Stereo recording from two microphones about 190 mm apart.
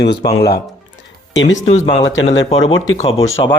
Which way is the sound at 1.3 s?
75° left (ahead or behind).